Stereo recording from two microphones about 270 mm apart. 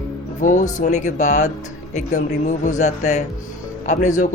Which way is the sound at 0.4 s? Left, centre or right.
Left.